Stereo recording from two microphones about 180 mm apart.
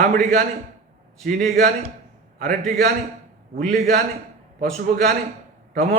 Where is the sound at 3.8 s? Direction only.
40° right (ahead or behind).